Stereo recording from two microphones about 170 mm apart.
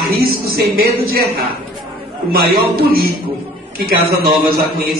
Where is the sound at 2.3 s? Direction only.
60° right (ahead or behind).